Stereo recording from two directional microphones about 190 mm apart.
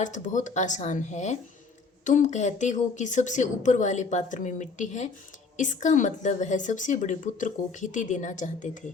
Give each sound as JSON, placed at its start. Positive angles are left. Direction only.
{"t": 0.0, "sound": "a woman's voice", "side_deg": 40}